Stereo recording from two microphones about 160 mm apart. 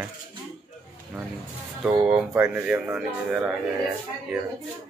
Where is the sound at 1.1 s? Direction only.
5° right (ahead or behind).